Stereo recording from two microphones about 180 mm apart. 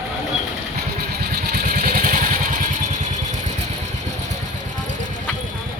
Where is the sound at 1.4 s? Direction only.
50° right (ahead or behind).